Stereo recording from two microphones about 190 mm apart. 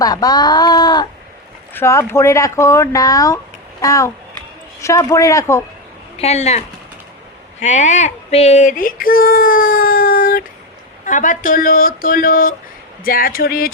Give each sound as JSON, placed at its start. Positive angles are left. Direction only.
{"t": 0.0, "sound": "speech", "side_deg": 20}
{"t": 6.1, "sound": "speech", "side_deg": 35}
{"t": 7.6, "sound": "a sound", "side_deg": 40}
{"t": 11.0, "sound": "speech", "side_deg": 40}